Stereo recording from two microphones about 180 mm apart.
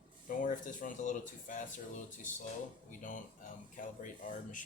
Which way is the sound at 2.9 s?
45° left (ahead or behind).